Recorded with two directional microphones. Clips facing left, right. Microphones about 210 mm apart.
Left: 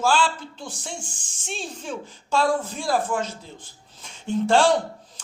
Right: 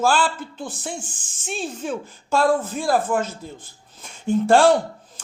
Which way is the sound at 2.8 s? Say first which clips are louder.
Right 3 dB; 55° right (ahead or behind).